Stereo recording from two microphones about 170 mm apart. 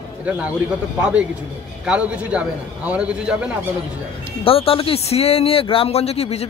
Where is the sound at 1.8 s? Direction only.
5° right (ahead or behind).